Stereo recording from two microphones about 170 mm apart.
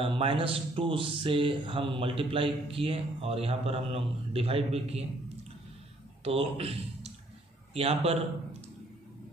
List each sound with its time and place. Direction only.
0.0 s speech: 35° right (ahead or behind)
6.2 s speech: 35° right (ahead or behind)